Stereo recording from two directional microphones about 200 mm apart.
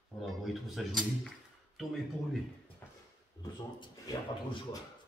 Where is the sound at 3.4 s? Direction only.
20° left (ahead or behind).